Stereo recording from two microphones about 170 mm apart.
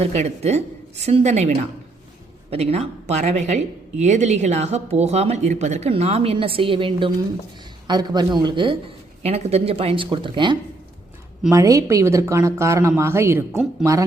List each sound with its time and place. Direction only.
0.0 s a woman's voice: 40° right (ahead or behind); by 13.4 s 15° right (ahead or behind)